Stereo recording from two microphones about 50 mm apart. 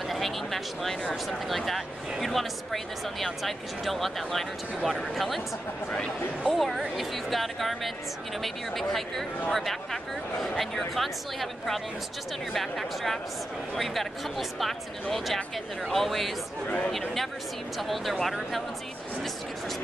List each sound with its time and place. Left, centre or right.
0.1 s speech: centre
6.4 s speech: centre
16.6 s speech: left
17.7 s speech: centre